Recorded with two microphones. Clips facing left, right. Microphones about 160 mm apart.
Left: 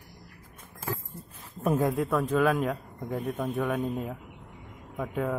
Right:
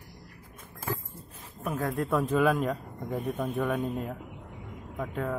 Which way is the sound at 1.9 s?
Centre (ahead or behind).